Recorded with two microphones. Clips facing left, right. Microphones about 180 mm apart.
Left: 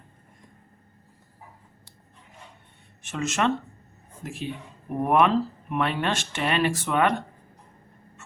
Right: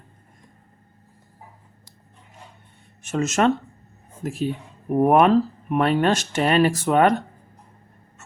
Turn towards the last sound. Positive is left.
turn(degrees=-40)  # may be behind; listen again after turning